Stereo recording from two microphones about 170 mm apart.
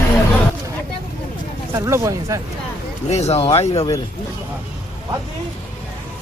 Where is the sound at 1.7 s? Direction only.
15° right (ahead or behind).